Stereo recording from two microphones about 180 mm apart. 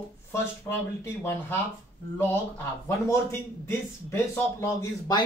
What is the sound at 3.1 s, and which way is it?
A man's voice, 15° left (ahead or behind).